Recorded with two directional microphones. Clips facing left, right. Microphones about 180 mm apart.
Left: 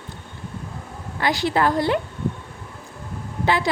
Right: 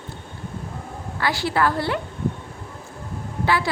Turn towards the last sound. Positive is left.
turn(degrees=20)  # may be behind; listen again after turning